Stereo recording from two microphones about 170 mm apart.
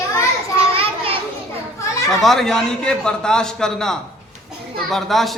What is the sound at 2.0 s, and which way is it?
A man's voice, centre (ahead or behind).